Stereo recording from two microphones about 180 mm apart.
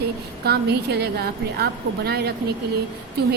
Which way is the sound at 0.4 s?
60° right (ahead or behind).